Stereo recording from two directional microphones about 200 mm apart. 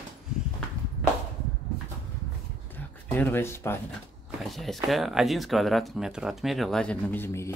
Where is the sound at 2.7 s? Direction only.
10° left (ahead or behind).